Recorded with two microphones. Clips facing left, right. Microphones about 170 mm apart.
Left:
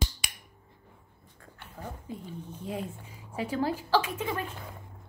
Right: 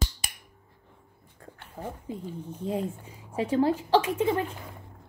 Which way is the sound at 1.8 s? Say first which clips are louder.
Right 4 dB; 30° right (ahead or behind).